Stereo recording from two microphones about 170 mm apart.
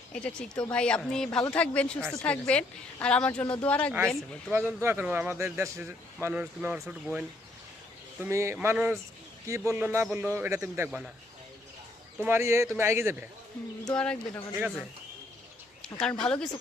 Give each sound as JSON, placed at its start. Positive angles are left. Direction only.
{"t": 0.1, "sound": "a woman's voice", "side_deg": 5}
{"t": 4.5, "sound": "speech", "side_deg": -15}
{"t": 8.2, "sound": "speech", "side_deg": -15}
{"t": 12.2, "sound": "speech", "side_deg": -15}
{"t": 13.9, "sound": "speech", "side_deg": 5}
{"t": 16.0, "sound": "speech", "side_deg": 5}